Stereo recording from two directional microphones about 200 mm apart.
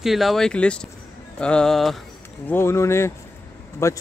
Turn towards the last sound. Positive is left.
turn(degrees=15)  # may be behind; listen again after turning